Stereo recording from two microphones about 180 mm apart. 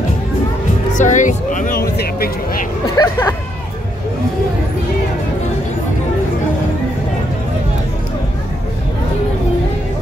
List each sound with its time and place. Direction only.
0.9 s speech: 45° left (ahead or behind)
3.0 s speech: 20° left (ahead or behind)